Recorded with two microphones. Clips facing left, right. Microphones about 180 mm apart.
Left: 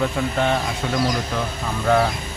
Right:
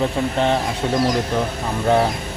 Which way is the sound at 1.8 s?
30° right (ahead or behind).